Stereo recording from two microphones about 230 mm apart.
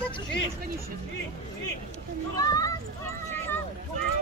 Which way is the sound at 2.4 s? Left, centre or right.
Centre.